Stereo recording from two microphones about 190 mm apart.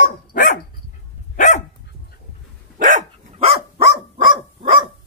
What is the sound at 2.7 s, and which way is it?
Dog, 40° right (ahead or behind).